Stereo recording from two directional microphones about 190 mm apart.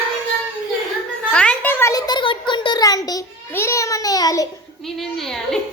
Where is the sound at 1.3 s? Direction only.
5° left (ahead or behind).